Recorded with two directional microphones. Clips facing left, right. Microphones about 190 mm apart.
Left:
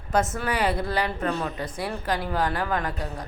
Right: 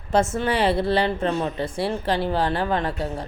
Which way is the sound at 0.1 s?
30° right (ahead or behind).